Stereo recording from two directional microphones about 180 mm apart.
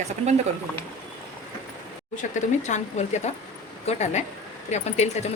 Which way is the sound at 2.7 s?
40° left (ahead or behind).